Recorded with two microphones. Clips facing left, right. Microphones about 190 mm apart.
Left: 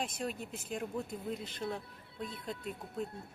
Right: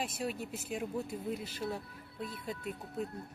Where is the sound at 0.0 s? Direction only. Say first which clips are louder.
Right 1 dB; 5° right (ahead or behind).